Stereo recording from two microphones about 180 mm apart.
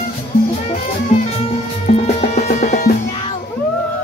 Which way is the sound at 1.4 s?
35° left (ahead or behind).